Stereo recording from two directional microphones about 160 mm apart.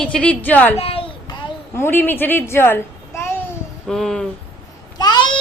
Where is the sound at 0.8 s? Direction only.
35° left (ahead or behind).